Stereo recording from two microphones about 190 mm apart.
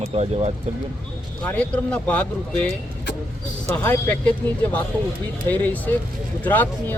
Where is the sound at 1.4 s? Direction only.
10° left (ahead or behind).